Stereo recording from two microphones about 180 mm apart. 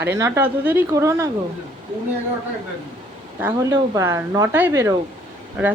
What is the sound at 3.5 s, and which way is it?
Speech, 20° right (ahead or behind).